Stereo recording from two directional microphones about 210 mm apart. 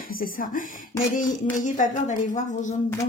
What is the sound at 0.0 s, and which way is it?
Speech, 40° left (ahead or behind).